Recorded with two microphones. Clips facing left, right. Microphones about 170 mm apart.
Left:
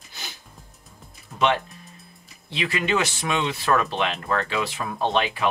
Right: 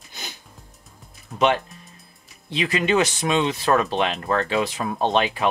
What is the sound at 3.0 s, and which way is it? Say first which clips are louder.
Speech: right 4 dB; 20° right (ahead or behind).